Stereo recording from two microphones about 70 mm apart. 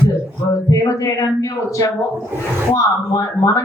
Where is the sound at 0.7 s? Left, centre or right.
Left.